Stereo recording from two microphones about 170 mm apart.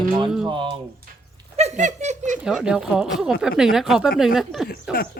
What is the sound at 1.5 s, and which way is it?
Speech, 40° right (ahead or behind).